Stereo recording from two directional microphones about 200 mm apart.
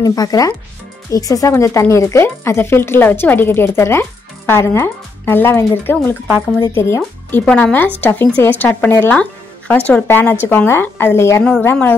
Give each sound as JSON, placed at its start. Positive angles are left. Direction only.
{"t": 0.0, "sound": "speech", "side_deg": 20}